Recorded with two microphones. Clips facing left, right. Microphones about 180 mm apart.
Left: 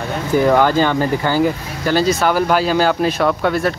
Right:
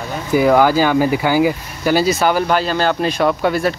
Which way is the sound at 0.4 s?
10° right (ahead or behind).